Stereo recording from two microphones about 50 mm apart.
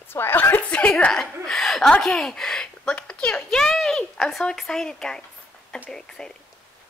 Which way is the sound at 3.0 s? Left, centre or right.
Centre.